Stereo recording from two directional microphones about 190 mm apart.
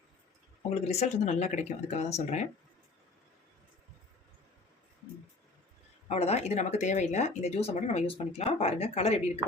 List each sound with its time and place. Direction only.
0.7 s speech: 35° left (ahead or behind)
6.1 s speech: 35° left (ahead or behind)